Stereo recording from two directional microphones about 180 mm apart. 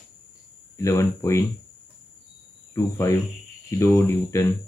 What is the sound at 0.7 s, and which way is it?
Speech, 15° left (ahead or behind).